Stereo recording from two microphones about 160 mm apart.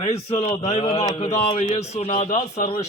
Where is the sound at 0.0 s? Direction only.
40° left (ahead or behind).